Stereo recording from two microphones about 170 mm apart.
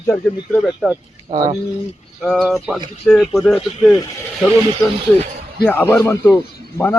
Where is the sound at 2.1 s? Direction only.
Centre (ahead or behind).